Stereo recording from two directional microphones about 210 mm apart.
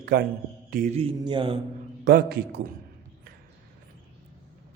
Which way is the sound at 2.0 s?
50° right (ahead or behind).